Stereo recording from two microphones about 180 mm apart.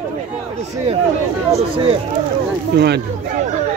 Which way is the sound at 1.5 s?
30° right (ahead or behind).